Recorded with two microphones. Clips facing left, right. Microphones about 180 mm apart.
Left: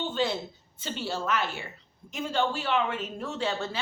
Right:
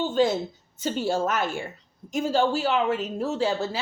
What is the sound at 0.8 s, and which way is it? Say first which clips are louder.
A woman's voice: right 8 dB; 45° right (ahead or behind).